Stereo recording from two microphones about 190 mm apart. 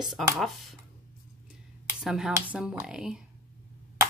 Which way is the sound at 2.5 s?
5° right (ahead or behind).